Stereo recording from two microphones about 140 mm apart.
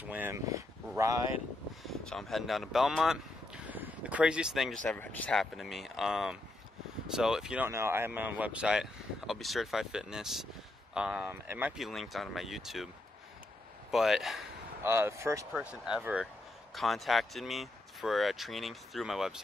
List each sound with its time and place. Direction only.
0.0 s speech: 15° right (ahead or behind)
0.5 s a sound: 25° right (ahead or behind)
1.8 s speech: centre (ahead or behind)
4.8 s speech: 15° left (ahead or behind); by 11.8 s 15° right (ahead or behind)
11.8 s speech: centre (ahead or behind)
14.8 s speech: 20° right (ahead or behind)
15.5 s speech: 5° right (ahead or behind)